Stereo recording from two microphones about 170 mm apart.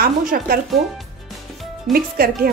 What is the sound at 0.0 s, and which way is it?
Speech, 60° right (ahead or behind).